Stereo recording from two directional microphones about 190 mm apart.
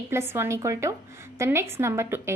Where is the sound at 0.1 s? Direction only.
15° right (ahead or behind).